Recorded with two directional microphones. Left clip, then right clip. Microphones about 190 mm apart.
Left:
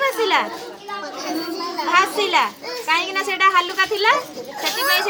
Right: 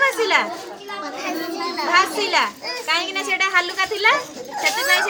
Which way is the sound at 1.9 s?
35° left (ahead or behind).